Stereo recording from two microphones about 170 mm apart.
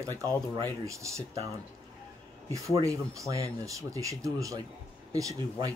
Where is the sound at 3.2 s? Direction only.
20° right (ahead or behind).